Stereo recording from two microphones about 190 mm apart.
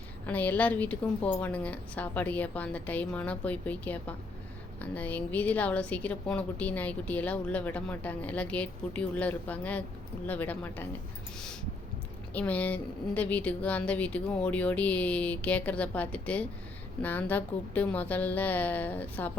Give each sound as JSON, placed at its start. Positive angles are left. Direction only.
{"t": 0.3, "sound": "a woman's voice", "side_deg": 10}
{"t": 12.3, "sound": "a woman's voice", "side_deg": 10}